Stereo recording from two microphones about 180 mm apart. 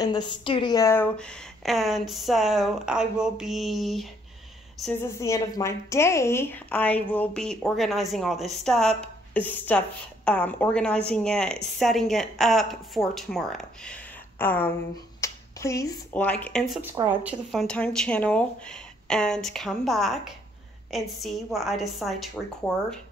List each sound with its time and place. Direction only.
0.0 s a woman's voice: 25° left (ahead or behind); by 4.1 s centre (ahead or behind)
5.0 s a woman's voice: 15° left (ahead or behind)
16.9 s a woman's voice: 15° right (ahead or behind)